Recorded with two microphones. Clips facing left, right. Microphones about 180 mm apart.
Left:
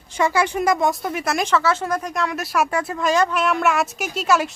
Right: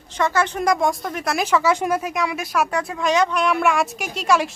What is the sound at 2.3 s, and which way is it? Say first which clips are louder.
A man's voice: left 1 dB; 5° left (ahead or behind).